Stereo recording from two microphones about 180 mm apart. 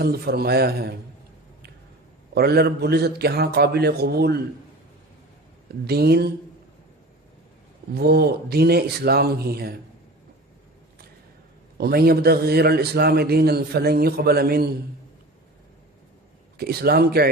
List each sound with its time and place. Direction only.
0.0 s a man's voice: 60° right (ahead or behind)
2.3 s a man's voice: 60° right (ahead or behind)
5.8 s a man's voice: 60° right (ahead or behind)
7.9 s a man's voice: 60° right (ahead or behind)
11.8 s a man's voice: 60° right (ahead or behind)
16.6 s a man's voice: 60° right (ahead or behind)